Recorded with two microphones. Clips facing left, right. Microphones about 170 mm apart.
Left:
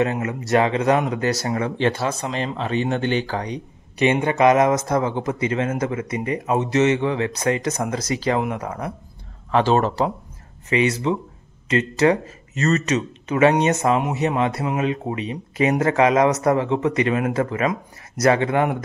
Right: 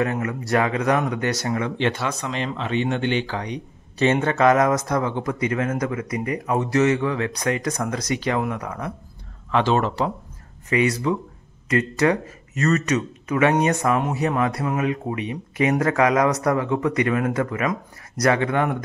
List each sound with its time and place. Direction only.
0.0 s speech: 25° left (ahead or behind)
4.0 s speech: 15° left (ahead or behind); by 10.0 s 35° left (ahead or behind)
10.7 s speech: 25° left (ahead or behind)
11.6 s a sound: 25° left (ahead or behind)
12.0 s speech: 25° left (ahead or behind)